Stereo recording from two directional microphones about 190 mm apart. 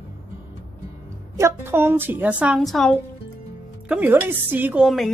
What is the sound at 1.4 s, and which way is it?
A woman's voice, 10° right (ahead or behind).